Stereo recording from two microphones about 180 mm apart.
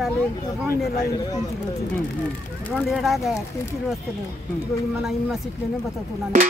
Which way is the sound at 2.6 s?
5° left (ahead or behind).